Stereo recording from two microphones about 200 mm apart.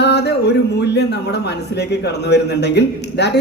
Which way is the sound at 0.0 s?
55° left (ahead or behind).